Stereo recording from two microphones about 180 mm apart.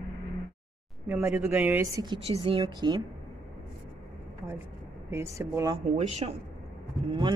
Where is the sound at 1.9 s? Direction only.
25° right (ahead or behind).